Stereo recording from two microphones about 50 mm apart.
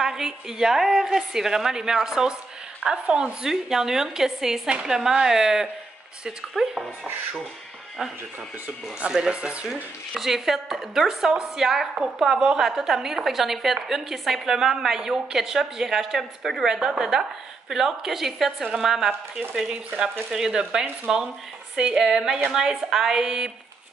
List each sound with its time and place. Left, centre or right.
0.0 s a woman's voice: centre
9.1 s speech: centre
10.1 s a woman's voice: centre